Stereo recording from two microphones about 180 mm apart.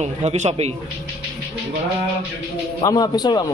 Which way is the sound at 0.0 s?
40° right (ahead or behind).